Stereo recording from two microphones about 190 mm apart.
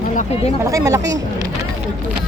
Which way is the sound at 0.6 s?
15° right (ahead or behind).